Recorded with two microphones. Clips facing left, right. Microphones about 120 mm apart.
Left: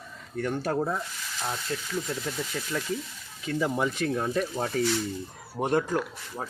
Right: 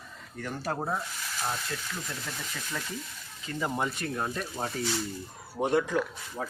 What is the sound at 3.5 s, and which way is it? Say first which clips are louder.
Speech: left 4 dB; 90° left.